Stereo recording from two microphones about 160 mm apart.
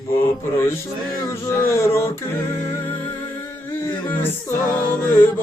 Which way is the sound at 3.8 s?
10° left (ahead or behind).